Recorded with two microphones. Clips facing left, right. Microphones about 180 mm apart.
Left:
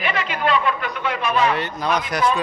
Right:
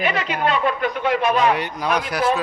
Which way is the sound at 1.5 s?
15° right (ahead or behind).